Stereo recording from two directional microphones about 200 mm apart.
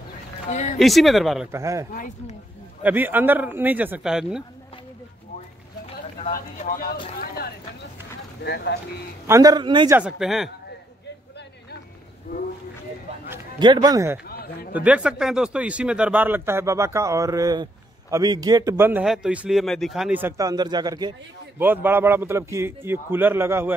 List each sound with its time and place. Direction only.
0.5 s a sound: 35° left (ahead or behind)
0.7 s speech: centre (ahead or behind)
1.5 s a man's voice: 15° right (ahead or behind)
1.9 s speech: 40° left (ahead or behind)
2.8 s a man's voice: 10° right (ahead or behind)
7.2 s a sound: 50° left (ahead or behind)
8.4 s speech: 55° left (ahead or behind)
9.3 s a man's voice: 20° right (ahead or behind)
9.9 s speech: 5° right (ahead or behind)
13.6 s a man's voice: 20° right (ahead or behind)
14.2 s a sound: 50° left (ahead or behind)
14.7 s a man's voice: 5° right (ahead or behind)